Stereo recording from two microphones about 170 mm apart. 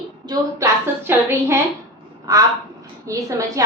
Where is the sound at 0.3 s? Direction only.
15° right (ahead or behind).